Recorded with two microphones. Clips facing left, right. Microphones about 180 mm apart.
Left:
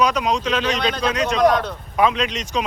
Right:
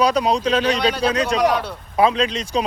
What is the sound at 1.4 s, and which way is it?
Speech, 10° right (ahead or behind).